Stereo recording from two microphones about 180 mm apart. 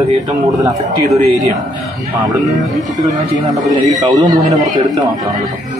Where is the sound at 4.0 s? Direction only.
20° right (ahead or behind).